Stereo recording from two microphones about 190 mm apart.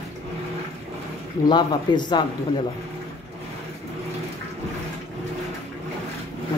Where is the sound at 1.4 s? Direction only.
25° left (ahead or behind).